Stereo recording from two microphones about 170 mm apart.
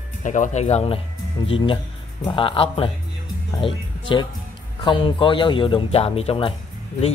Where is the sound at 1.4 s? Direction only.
25° left (ahead or behind).